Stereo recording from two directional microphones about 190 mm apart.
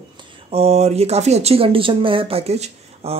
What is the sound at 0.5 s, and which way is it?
Speech, 30° right (ahead or behind).